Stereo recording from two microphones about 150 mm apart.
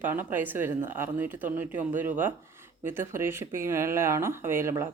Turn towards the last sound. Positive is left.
turn(degrees=-15)  # may be behind; listen again after turning